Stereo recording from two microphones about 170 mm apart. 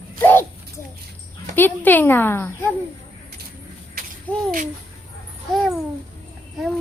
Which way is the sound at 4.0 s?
55° right (ahead or behind).